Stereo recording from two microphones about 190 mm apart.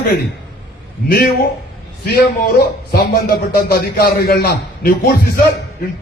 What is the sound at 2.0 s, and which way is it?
A man's voice, 55° left (ahead or behind).